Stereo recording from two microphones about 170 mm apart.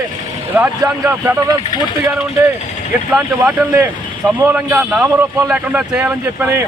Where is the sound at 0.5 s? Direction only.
10° right (ahead or behind).